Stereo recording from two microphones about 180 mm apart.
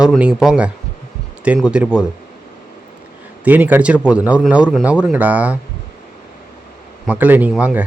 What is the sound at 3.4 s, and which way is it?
A man's voice, 10° right (ahead or behind).